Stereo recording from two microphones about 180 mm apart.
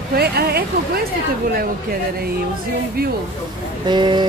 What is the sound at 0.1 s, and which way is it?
Speech, 60° right (ahead or behind).